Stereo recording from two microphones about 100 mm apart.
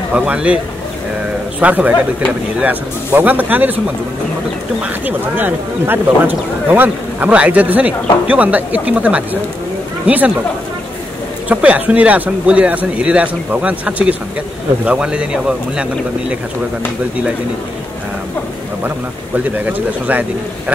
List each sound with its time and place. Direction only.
0.1 s speech: 10° right (ahead or behind)
1.6 s speech: 15° right (ahead or behind)
4.8 s speech: 20° right (ahead or behind)
11.4 s speech: 15° right (ahead or behind)
19.3 s speech: 15° right (ahead or behind)